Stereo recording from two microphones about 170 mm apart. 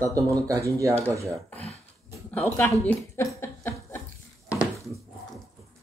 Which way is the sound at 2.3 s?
10° left (ahead or behind).